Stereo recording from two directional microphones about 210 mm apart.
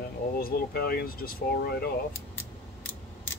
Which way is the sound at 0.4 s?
45° left (ahead or behind).